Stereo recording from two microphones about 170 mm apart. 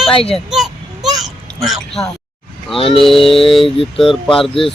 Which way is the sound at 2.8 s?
30° left (ahead or behind).